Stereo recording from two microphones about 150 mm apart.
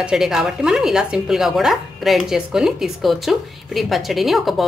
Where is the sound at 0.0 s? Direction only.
5° right (ahead or behind).